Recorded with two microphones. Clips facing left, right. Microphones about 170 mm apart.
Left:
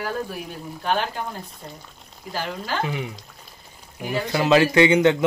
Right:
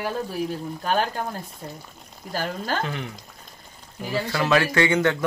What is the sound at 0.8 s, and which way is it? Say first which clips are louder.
Speech: even; 40° right (ahead or behind).